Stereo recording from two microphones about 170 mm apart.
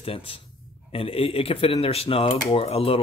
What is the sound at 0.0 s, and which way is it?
Speech, 35° left (ahead or behind).